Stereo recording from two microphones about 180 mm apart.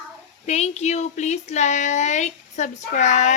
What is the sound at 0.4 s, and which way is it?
Speech, 35° left (ahead or behind).